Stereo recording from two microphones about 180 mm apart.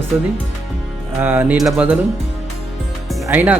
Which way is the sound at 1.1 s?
10° right (ahead or behind).